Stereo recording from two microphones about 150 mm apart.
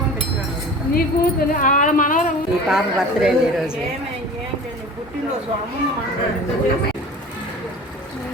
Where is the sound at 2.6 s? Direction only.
5° right (ahead or behind).